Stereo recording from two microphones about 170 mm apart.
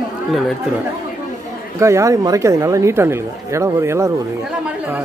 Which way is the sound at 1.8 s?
15° right (ahead or behind).